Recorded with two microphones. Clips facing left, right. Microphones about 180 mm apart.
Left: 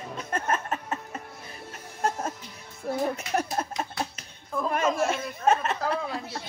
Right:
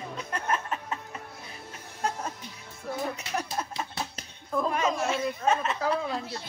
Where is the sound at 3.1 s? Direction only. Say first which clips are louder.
Left 4 dB; 50° left (ahead or behind).